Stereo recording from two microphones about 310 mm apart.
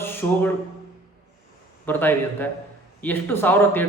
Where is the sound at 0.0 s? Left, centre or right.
Centre.